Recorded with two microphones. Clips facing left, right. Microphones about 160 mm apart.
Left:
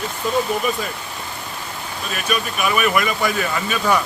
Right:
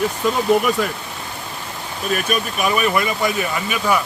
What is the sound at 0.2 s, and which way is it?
Speech, 75° right (ahead or behind).